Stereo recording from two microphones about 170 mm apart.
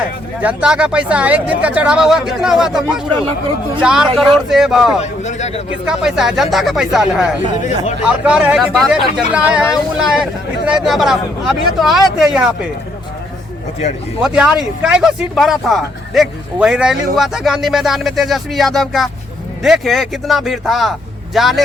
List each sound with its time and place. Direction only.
0.4 s speech: 5° right (ahead or behind)
4.9 s speech: 45° left (ahead or behind)
5.8 s speech: 5° right (ahead or behind)
7.6 s speech: 45° left (ahead or behind)
8.2 s speech: 5° right (ahead or behind)
14.2 s speech: 5° right (ahead or behind)